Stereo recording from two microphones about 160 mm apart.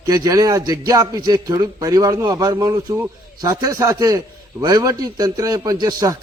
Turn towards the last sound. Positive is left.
turn(degrees=-25)  # may be behind; listen again after turning